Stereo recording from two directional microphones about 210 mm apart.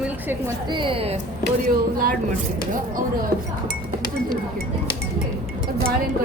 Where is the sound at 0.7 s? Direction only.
25° right (ahead or behind).